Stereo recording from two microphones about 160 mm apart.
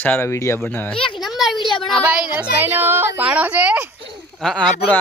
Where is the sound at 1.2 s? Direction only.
Centre (ahead or behind).